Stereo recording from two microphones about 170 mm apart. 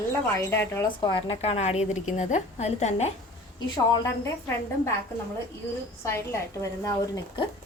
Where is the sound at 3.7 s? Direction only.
20° left (ahead or behind).